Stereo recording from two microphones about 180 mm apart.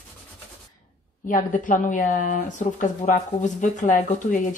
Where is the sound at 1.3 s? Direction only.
45° left (ahead or behind).